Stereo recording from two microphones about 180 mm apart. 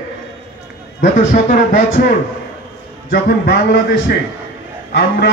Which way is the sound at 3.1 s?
65° left (ahead or behind).